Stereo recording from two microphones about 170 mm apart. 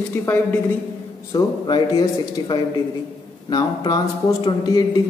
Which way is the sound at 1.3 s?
25° left (ahead or behind).